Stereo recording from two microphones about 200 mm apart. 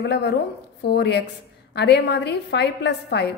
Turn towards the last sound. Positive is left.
turn(degrees=55)  # may be behind; listen again after turning